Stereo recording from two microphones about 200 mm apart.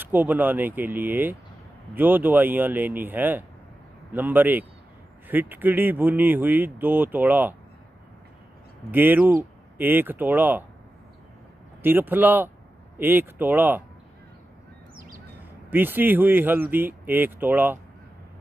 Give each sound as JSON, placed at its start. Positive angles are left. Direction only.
{"t": 0.0, "sound": "speech", "side_deg": -10}
{"t": 8.9, "sound": "speech", "side_deg": -10}
{"t": 11.8, "sound": "speech", "side_deg": -10}
{"t": 15.0, "sound": "bird", "side_deg": -45}
{"t": 15.7, "sound": "speech", "side_deg": -10}